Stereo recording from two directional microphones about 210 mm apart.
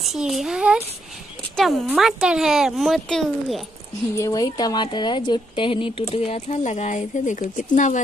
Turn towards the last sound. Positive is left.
turn(degrees=35)  # may be behind; listen again after turning